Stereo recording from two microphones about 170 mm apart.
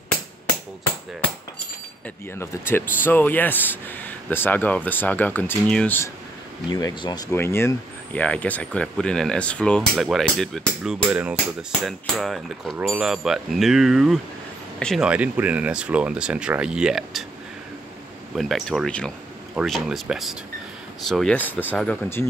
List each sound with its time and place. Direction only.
2.3 s speech: 15° left (ahead or behind)
6.7 s speech: 25° left (ahead or behind); by 15.0 s 5° left (ahead or behind)
15.0 s speech: 10° right (ahead or behind)
18.3 s speech: centre (ahead or behind)